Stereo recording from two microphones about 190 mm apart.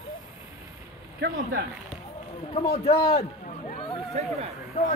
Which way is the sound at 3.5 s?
40° left (ahead or behind).